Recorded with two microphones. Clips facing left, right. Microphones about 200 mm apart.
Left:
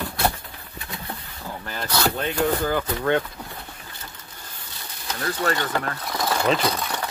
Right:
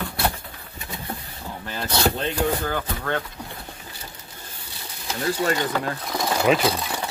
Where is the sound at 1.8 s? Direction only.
30° right (ahead or behind).